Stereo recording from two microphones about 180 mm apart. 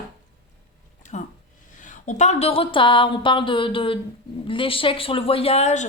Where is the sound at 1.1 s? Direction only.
40° left (ahead or behind).